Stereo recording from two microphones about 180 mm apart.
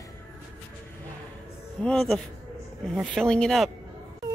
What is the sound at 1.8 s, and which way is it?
A man's voice, 5° left (ahead or behind).